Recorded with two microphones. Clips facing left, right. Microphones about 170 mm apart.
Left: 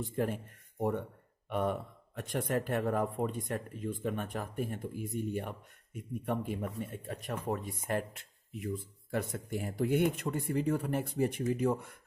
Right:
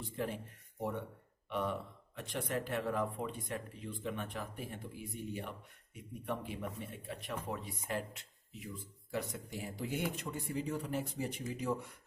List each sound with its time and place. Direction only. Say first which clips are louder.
0.0 s speech: left 6 dB; 50° left (ahead or behind)